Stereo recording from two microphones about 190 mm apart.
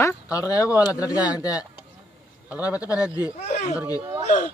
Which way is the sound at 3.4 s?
35° left (ahead or behind).